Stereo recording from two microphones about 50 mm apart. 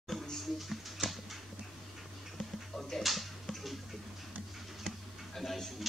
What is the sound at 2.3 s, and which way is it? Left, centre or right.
Music, centre.